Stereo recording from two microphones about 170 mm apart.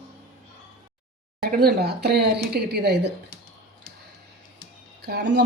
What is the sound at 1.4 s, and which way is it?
Speech, 65° right (ahead or behind).